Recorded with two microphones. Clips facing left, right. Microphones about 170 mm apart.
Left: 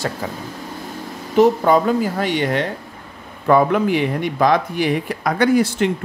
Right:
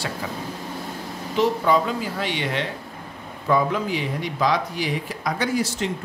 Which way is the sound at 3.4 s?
60° left (ahead or behind).